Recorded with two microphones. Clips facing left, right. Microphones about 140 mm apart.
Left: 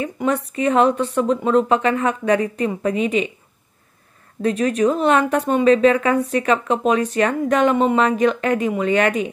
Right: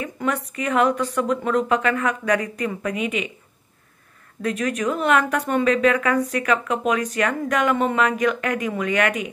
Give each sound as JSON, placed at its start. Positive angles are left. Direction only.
{"t": 0.0, "sound": "a sound", "side_deg": 30}
{"t": 0.5, "sound": "speech", "side_deg": 30}
{"t": 4.4, "sound": "speech", "side_deg": 30}